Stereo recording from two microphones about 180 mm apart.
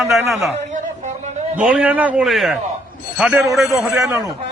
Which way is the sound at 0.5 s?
40° right (ahead or behind).